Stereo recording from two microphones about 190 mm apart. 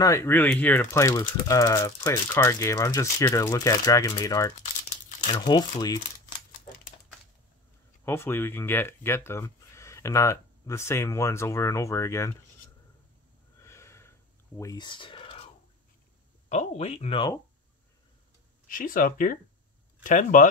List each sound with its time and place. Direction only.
0.0 s speech: 15° left (ahead or behind)
8.0 s speech: 10° left (ahead or behind)
13.6 s snort: 15° left (ahead or behind)
14.6 s speech: 20° left (ahead or behind)
18.7 s speech: 45° left (ahead or behind)